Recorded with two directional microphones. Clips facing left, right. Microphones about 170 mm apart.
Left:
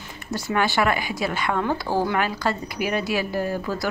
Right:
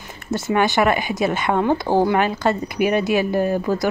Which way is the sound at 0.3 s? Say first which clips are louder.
Right 5 dB; 20° right (ahead or behind).